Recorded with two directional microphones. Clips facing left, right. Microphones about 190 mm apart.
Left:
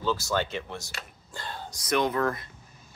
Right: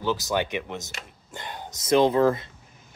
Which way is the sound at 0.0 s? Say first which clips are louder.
Right 2 dB; 15° right (ahead or behind).